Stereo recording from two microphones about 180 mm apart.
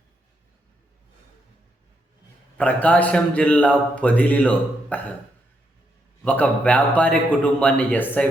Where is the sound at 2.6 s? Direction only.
5° left (ahead or behind).